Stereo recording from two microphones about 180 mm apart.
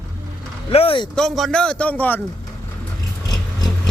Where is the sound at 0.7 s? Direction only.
30° left (ahead or behind).